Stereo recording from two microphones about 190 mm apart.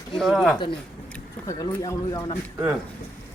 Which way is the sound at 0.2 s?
Centre (ahead or behind).